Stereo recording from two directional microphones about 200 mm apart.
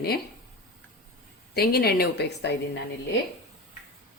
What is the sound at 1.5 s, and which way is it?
A woman's voice, 50° left (ahead or behind).